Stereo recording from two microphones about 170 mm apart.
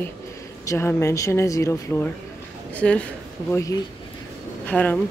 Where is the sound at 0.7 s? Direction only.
15° left (ahead or behind).